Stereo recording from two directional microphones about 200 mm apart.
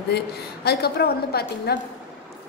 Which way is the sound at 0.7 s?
50° left (ahead or behind).